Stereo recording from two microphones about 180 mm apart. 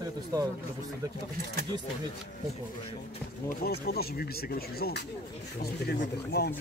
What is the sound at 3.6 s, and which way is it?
Speech, 60° left (ahead or behind).